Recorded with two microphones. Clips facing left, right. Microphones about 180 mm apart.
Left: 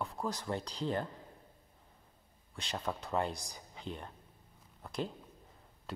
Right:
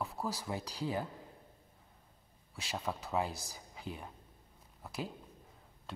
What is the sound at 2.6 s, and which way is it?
Speech, 5° right (ahead or behind).